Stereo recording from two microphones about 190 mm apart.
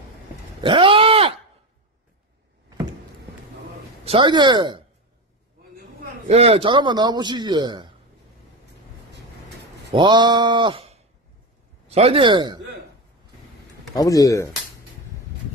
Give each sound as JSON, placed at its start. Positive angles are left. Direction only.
{"t": 0.6, "sound": "a sound", "side_deg": -25}
{"t": 4.0, "sound": "speech", "side_deg": -30}
{"t": 6.2, "sound": "a man's voice", "side_deg": -30}
{"t": 9.9, "sound": "a man's voice", "side_deg": -25}
{"t": 13.9, "sound": "speech", "side_deg": 20}